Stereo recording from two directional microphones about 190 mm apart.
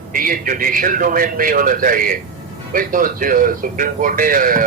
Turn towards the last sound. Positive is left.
turn(degrees=-45)  # may be behind; listen again after turning